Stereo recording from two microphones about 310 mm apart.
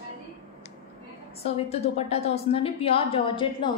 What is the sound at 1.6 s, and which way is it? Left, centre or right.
A woman's voice, centre.